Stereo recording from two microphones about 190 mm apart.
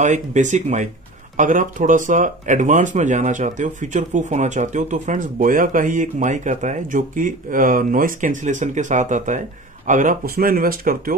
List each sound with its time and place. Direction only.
0.0 s speech: 40° right (ahead or behind)